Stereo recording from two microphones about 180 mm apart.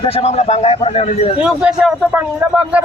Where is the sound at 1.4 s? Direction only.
5° right (ahead or behind).